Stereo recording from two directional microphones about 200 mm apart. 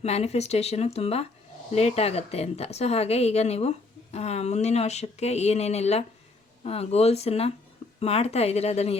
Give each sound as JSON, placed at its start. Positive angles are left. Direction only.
{"t": 0.0, "sound": "a woman's voice", "side_deg": 30}